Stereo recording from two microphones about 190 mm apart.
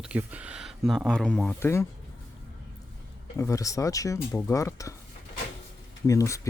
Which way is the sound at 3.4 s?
15° left (ahead or behind).